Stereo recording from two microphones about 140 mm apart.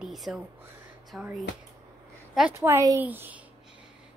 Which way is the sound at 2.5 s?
20° right (ahead or behind).